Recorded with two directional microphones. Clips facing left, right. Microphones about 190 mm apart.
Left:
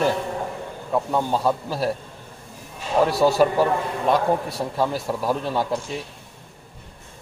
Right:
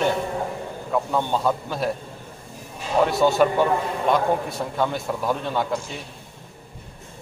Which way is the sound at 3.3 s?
5° left (ahead or behind).